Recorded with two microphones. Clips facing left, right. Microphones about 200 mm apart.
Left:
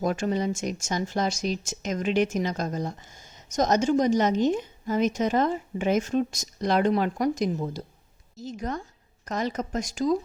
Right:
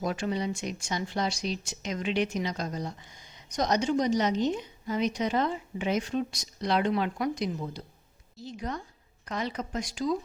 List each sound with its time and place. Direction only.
0.0 s speech: 45° left (ahead or behind)